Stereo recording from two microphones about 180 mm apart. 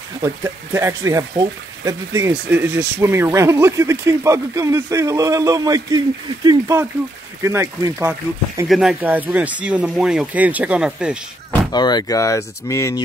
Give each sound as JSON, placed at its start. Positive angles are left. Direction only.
{"t": 0.2, "sound": "speech", "side_deg": -15}
{"t": 8.6, "sound": "speech", "side_deg": 0}
{"t": 11.7, "sound": "speech", "side_deg": 25}